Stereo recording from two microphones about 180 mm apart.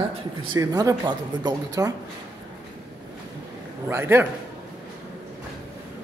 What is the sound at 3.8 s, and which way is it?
Speech, 15° right (ahead or behind).